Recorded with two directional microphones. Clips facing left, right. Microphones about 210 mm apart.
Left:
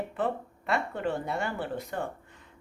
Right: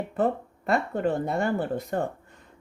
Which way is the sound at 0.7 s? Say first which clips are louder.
Right 5 dB; 45° right (ahead or behind).